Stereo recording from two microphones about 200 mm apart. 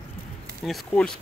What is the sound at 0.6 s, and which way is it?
Speech, centre (ahead or behind).